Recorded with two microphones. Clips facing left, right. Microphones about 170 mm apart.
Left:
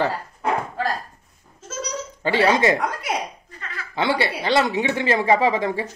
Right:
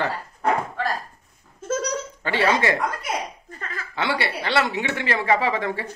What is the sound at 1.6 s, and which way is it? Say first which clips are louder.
Laughter: right 13 dB; 55° right (ahead or behind).